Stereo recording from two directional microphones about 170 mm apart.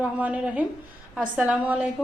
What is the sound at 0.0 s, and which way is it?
A woman's voice, 5° right (ahead or behind).